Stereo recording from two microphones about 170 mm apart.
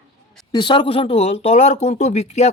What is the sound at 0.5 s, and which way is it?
Speech, 30° left (ahead or behind).